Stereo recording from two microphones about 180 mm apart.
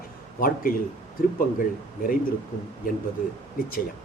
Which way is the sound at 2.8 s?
50° left (ahead or behind).